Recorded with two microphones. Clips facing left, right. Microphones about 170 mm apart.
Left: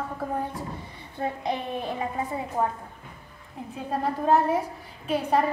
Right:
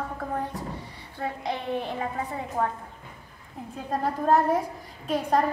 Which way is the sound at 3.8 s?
5° left (ahead or behind).